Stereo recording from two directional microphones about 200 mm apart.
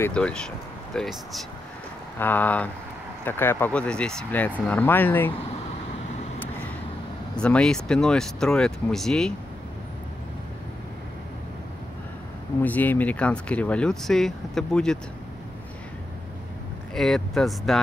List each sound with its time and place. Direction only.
0.0 s speech: 5° left (ahead or behind)
7.3 s speech: 5° left (ahead or behind)
12.6 s speech: 10° left (ahead or behind)
16.9 s speech: centre (ahead or behind)